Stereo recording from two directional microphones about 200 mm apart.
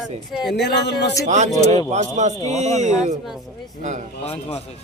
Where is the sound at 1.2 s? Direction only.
35° right (ahead or behind).